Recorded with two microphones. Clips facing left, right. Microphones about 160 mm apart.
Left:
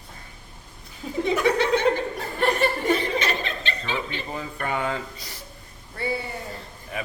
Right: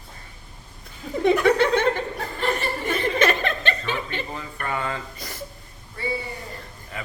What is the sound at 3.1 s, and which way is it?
Chuckle, 55° right (ahead or behind).